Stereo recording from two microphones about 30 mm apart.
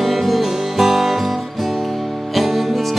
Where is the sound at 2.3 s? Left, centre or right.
Centre.